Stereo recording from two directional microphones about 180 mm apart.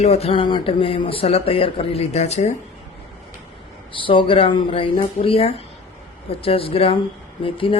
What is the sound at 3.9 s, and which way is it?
Speech, 30° left (ahead or behind).